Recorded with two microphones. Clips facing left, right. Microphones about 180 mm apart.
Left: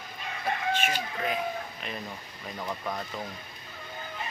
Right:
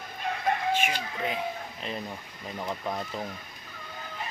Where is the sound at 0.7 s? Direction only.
10° right (ahead or behind).